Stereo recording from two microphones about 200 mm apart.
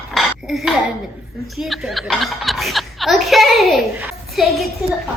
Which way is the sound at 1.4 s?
Centre (ahead or behind).